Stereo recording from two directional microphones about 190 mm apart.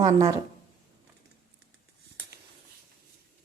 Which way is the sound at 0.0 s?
25° right (ahead or behind).